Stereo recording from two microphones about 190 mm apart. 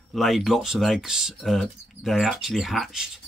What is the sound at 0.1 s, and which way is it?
Speech, centre (ahead or behind).